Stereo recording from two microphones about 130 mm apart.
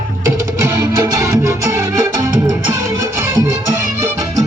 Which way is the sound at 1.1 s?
25° right (ahead or behind).